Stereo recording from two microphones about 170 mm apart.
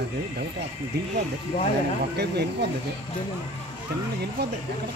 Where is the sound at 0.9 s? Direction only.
70° right (ahead or behind).